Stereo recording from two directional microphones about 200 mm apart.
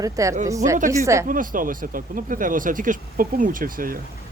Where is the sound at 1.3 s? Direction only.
45° right (ahead or behind).